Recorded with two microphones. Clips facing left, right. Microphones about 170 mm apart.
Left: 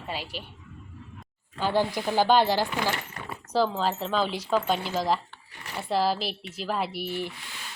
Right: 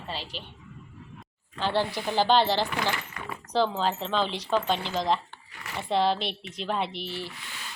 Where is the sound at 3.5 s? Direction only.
5° left (ahead or behind).